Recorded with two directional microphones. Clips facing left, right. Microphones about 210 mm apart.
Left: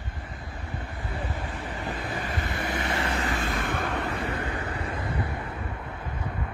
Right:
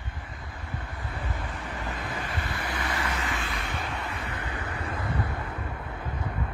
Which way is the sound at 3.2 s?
45° left (ahead or behind).